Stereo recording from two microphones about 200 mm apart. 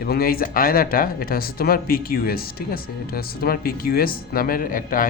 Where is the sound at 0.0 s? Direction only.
45° left (ahead or behind).